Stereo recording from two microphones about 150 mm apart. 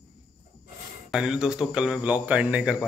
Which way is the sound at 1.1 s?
5° right (ahead or behind).